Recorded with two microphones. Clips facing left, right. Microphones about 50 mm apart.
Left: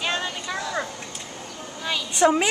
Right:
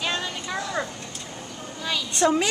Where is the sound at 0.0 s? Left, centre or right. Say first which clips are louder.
Left 1 dB; centre.